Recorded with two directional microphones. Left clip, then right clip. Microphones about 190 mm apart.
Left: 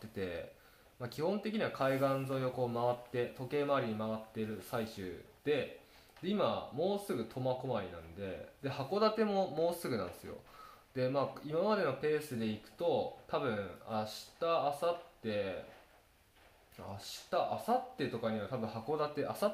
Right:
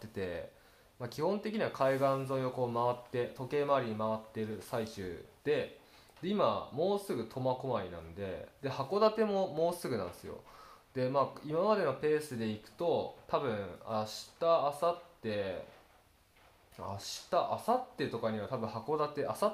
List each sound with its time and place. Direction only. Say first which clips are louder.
0.1 s speech: right 2 dB; 15° right (ahead or behind)
17.3 s speech: right 2 dB; 20° right (ahead or behind)